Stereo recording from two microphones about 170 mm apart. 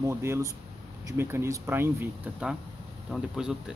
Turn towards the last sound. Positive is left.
turn(degrees=-5)  # may be behind; listen again after turning